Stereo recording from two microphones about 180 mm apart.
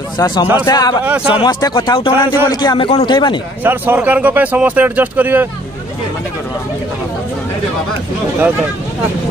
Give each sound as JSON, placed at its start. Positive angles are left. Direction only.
{"t": 0.2, "sound": "a man's voice", "side_deg": 20}
{"t": 1.0, "sound": "speech", "side_deg": -5}
{"t": 1.4, "sound": "a man's voice", "side_deg": 25}
{"t": 3.6, "sound": "speech", "side_deg": -10}